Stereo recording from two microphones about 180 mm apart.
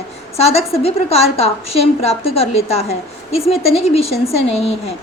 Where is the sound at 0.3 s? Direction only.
35° left (ahead or behind).